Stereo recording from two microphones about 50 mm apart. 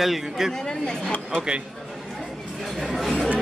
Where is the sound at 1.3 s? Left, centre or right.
Right.